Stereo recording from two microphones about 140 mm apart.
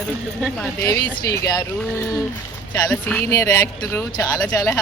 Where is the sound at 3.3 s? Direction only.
25° left (ahead or behind).